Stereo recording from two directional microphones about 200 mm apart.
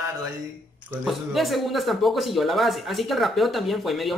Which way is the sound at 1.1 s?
Centre (ahead or behind).